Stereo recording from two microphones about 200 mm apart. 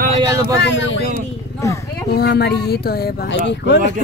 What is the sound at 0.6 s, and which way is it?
Speech, 60° left (ahead or behind).